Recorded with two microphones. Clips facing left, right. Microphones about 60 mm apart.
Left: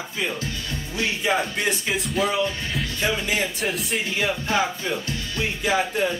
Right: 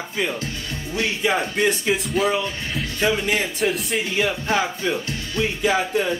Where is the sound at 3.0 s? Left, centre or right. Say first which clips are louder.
Right 4 dB; right.